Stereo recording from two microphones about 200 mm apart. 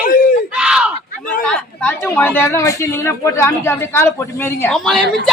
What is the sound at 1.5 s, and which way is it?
Speech, 5° left (ahead or behind).